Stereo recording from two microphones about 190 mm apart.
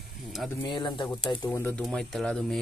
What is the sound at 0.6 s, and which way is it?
Speech, 25° left (ahead or behind).